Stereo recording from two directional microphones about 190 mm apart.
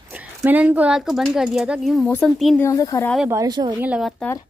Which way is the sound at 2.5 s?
15° left (ahead or behind).